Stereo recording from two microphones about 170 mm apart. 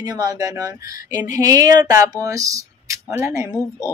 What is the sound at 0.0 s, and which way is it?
Speech, 20° right (ahead or behind).